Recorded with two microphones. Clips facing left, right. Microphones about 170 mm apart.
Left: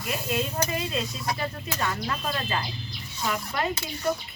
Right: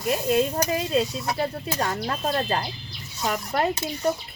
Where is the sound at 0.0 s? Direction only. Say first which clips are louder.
Right 7 dB; 35° right (ahead or behind).